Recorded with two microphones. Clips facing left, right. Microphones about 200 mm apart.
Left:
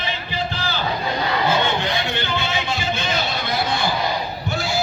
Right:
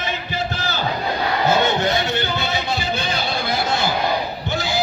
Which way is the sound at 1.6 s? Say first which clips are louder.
Right 3 dB; 40° right (ahead or behind).